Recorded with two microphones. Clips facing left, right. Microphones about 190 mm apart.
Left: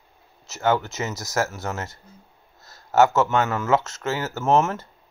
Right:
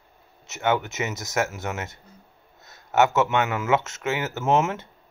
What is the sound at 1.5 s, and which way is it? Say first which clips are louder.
Speech: left 1 dB; 35° left (ahead or behind).